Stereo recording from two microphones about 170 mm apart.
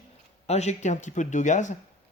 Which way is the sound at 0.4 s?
40° left (ahead or behind).